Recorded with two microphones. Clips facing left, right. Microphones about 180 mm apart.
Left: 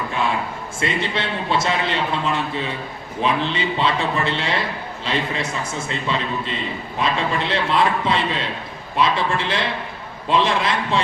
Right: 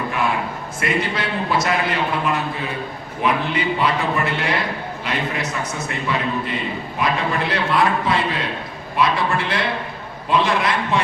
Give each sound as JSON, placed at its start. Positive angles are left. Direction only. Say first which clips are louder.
{"t": 0.8, "sound": "a man's voice", "louder": "right 1 dB", "side_deg": 25}